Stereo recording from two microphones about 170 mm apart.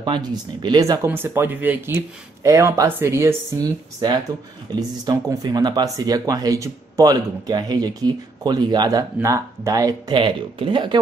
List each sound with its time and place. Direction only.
0.0 s speech: 25° right (ahead or behind)